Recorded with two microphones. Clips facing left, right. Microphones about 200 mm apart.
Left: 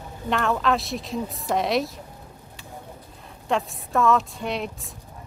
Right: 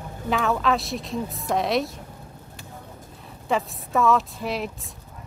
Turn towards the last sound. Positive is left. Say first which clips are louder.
# even
turn(degrees=0)  # may be behind; listen again after turning